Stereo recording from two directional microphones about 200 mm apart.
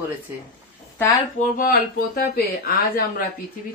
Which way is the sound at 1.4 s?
50° left (ahead or behind).